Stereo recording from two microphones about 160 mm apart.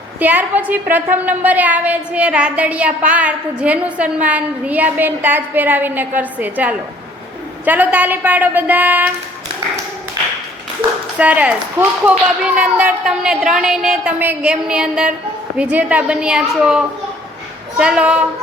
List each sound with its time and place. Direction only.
0.2 s a woman's voice: 10° right (ahead or behind)
10.8 s clapping: 35° right (ahead or behind)
11.2 s a woman's voice: 10° right (ahead or behind)